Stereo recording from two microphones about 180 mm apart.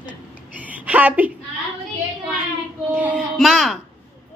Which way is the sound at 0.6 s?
10° right (ahead or behind).